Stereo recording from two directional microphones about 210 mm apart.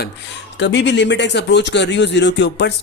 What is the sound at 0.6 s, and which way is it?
Speech, 55° left (ahead or behind).